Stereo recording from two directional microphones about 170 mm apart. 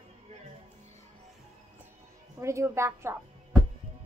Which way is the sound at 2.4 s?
15° right (ahead or behind).